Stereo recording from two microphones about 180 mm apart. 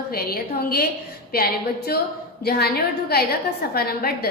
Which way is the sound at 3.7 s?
60° left (ahead or behind).